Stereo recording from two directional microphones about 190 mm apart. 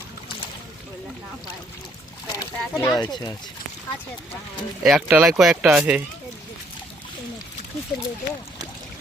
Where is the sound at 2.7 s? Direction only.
20° left (ahead or behind).